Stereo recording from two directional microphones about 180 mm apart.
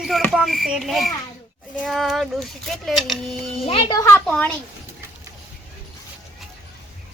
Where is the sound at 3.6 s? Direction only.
35° left (ahead or behind).